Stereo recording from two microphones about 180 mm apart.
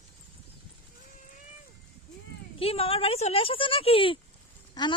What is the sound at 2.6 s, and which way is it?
Speech, 30° left (ahead or behind).